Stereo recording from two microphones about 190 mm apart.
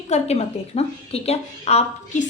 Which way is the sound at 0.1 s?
35° left (ahead or behind).